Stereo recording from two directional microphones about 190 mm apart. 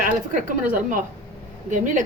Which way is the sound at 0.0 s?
45° right (ahead or behind).